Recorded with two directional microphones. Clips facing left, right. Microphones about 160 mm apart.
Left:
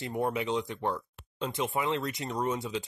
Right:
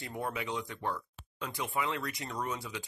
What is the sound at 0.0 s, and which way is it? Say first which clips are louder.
Speech: left 7 dB; 20° left (ahead or behind).